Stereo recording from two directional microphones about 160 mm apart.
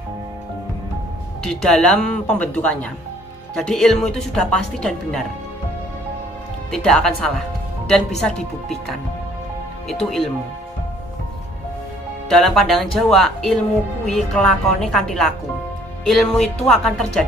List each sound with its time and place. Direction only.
1.4 s a woman's voice: 5° left (ahead or behind)
6.7 s a woman's voice: 5° left (ahead or behind)
10.0 s a woman's voice: centre (ahead or behind)
12.3 s a woman's voice: centre (ahead or behind)